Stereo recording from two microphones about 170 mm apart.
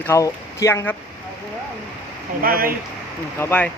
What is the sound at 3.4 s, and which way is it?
Speech, 10° left (ahead or behind).